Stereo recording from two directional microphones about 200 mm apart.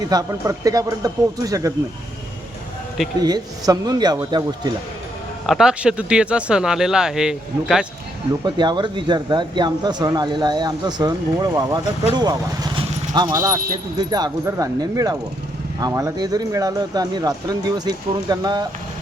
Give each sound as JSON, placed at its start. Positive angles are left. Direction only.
{"t": 0.1, "sound": "speech", "side_deg": -15}
{"t": 3.2, "sound": "speech", "side_deg": -20}
{"t": 5.5, "sound": "speech", "side_deg": -5}
{"t": 8.4, "sound": "speech", "side_deg": -20}